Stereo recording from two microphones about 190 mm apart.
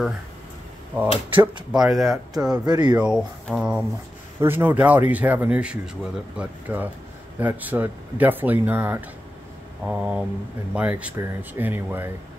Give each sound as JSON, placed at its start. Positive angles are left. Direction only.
{"t": 0.9, "sound": "speech", "side_deg": -10}
{"t": 1.3, "sound": "speech", "side_deg": -25}
{"t": 1.7, "sound": "speech", "side_deg": 0}
{"t": 2.6, "sound": "speech", "side_deg": -20}
{"t": 3.0, "sound": "speech", "side_deg": -5}